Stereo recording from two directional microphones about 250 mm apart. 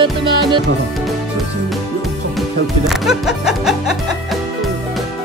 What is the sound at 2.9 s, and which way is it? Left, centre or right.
Speech, centre.